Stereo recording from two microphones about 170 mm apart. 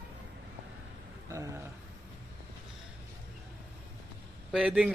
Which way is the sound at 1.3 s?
20° right (ahead or behind).